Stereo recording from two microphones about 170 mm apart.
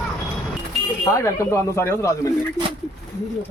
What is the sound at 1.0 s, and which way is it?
Speech, 15° left (ahead or behind).